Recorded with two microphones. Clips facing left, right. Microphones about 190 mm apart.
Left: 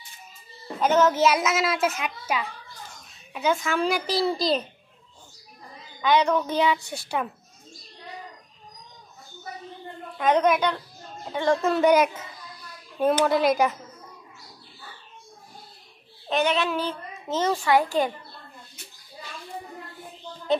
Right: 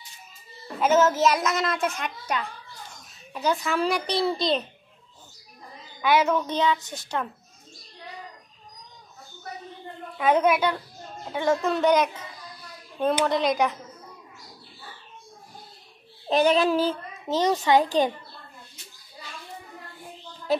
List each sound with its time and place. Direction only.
0.7 s a child's voice: 5° right (ahead or behind)
5.9 s a woman's voice: 5° right (ahead or behind)
6.5 s speech: 10° left (ahead or behind)
10.1 s a woman's voice: 5° right (ahead or behind)
11.6 s a child's voice: 5° left (ahead or behind)
16.3 s child singing: 35° right (ahead or behind)
17.3 s a child's voice: 15° right (ahead or behind)